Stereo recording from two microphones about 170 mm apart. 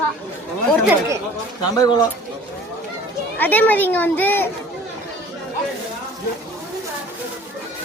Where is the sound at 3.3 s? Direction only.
10° left (ahead or behind).